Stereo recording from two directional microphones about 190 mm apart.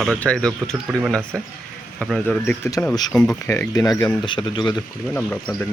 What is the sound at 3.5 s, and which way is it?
A man's voice, 15° left (ahead or behind).